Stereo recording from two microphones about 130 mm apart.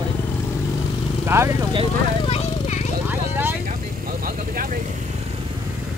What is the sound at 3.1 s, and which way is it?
Vehicle, 15° right (ahead or behind).